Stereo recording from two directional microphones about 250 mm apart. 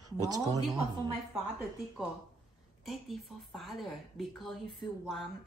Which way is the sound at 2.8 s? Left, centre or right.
Centre.